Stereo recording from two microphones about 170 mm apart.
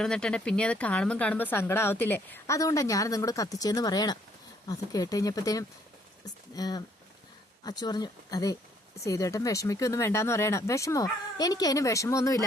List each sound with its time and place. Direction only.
0.0 s speech: 5° left (ahead or behind)